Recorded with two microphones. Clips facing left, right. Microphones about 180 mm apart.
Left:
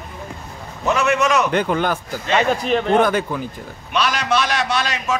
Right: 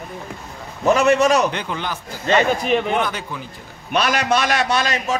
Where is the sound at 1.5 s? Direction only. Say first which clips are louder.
Left 8 dB; 50° left (ahead or behind).